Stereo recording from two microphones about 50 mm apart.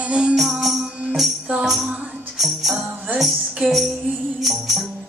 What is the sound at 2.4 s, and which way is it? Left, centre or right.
Music, centre.